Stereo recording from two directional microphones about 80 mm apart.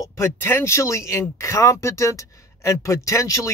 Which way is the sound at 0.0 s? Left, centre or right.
Left.